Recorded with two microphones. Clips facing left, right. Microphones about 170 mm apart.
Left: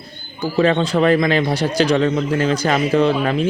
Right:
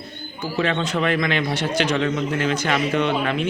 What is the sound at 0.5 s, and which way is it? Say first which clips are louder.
A man's voice: left 7 dB; 35° left (ahead or behind).